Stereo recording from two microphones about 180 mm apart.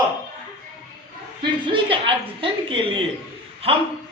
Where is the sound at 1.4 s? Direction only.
25° right (ahead or behind).